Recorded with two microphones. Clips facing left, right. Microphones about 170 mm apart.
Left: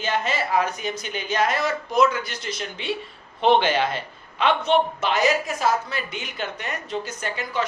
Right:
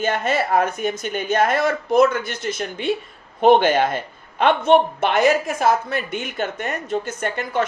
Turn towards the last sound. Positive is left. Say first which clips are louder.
# right 5 dB
turn(degrees=-50)  # may be behind; listen again after turning